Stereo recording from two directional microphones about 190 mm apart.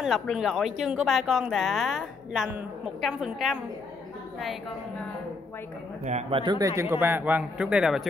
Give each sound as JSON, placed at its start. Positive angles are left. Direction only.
{"t": 0.0, "sound": "speech", "side_deg": 0}
{"t": 6.0, "sound": "speech", "side_deg": -35}
{"t": 6.4, "sound": "a man's voice", "side_deg": -20}